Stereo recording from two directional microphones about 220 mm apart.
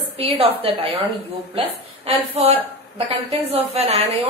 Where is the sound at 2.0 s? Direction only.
25° right (ahead or behind).